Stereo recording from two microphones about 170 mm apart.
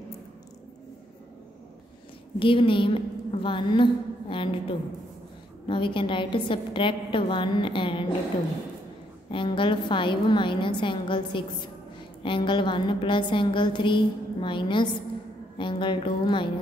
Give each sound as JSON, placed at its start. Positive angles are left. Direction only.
{"t": 2.3, "sound": "a woman's voice", "side_deg": 30}
{"t": 9.3, "sound": "a woman's voice", "side_deg": 30}